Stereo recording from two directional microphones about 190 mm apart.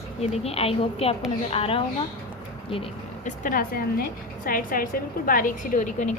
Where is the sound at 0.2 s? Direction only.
30° left (ahead or behind).